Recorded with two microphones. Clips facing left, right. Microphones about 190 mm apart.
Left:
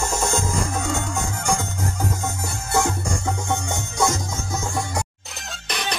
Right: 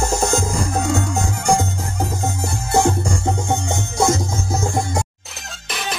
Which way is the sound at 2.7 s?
30° right (ahead or behind).